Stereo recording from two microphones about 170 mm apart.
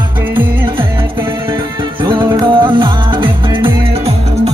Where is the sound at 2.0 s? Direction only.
25° right (ahead or behind).